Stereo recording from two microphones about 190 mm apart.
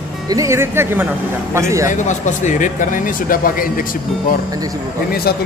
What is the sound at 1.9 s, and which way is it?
Speech, 40° left (ahead or behind).